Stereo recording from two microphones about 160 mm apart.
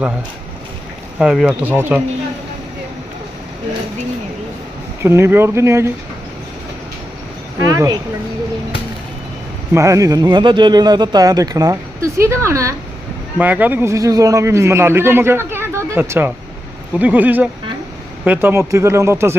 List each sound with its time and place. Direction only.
1.2 s a man's voice: 5° right (ahead or behind)
5.0 s a man's voice: 15° right (ahead or behind)
7.6 s speech: 20° right (ahead or behind)
9.7 s a man's voice: 20° right (ahead or behind)